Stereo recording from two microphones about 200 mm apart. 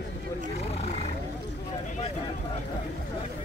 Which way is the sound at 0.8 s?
35° left (ahead or behind).